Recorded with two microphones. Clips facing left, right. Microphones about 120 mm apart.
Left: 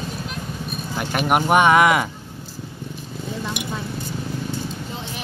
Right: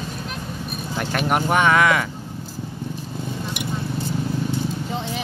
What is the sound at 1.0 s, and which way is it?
Speech, 10° left (ahead or behind).